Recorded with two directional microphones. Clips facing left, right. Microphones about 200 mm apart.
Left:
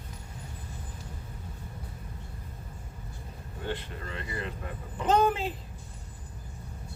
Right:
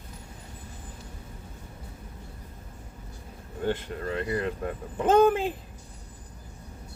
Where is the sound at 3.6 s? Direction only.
45° right (ahead or behind).